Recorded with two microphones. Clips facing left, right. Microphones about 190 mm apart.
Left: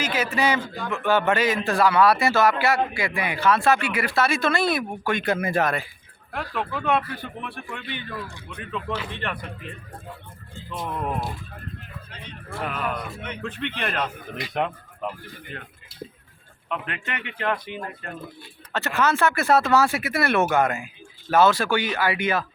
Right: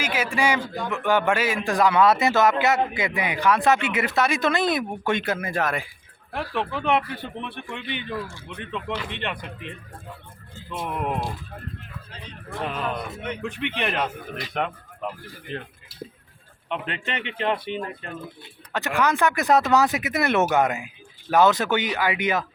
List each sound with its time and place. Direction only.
0.0 s a man's voice: 10° right (ahead or behind)
5.4 s speech: 5° left (ahead or behind)
6.5 s speech: 20° right (ahead or behind)
10.8 s a man's voice: 15° right (ahead or behind)
12.5 s a man's voice: 15° right (ahead or behind)
14.3 s speech: 5° left (ahead or behind)
16.6 s speech: 25° right (ahead or behind)
18.7 s a man's voice: 15° right (ahead or behind)